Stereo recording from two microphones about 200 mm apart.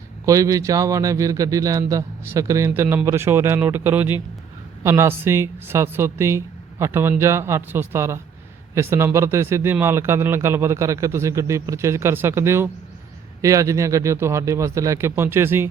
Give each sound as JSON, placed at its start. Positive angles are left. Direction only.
{"t": 0.3, "sound": "speech", "side_deg": -15}